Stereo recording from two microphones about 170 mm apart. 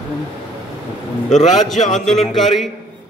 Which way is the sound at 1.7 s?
45° left (ahead or behind).